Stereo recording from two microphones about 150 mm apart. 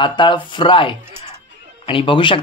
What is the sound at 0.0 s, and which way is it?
Speech, 30° left (ahead or behind).